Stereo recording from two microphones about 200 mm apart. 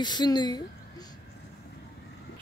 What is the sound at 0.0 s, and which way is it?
A woman's voice, 20° left (ahead or behind).